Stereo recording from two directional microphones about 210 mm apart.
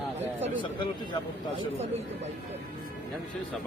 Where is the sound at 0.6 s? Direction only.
25° left (ahead or behind).